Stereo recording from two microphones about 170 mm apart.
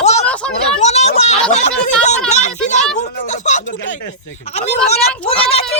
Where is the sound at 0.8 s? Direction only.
40° left (ahead or behind).